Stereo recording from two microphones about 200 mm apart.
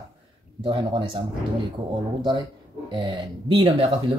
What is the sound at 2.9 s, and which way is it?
Speech, 25° right (ahead or behind).